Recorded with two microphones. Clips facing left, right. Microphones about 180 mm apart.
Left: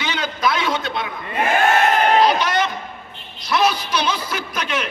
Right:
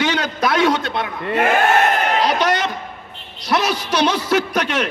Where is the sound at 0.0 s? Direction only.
70° right (ahead or behind).